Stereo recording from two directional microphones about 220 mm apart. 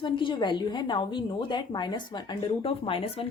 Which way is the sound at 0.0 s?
20° left (ahead or behind).